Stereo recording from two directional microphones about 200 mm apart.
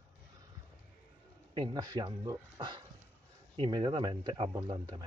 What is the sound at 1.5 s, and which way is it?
Speech, 20° right (ahead or behind).